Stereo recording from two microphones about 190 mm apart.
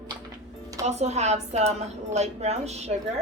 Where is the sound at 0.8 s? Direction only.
35° right (ahead or behind).